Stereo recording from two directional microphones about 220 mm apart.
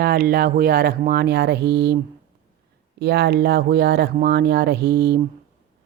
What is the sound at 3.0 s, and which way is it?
Speech, 50° right (ahead or behind).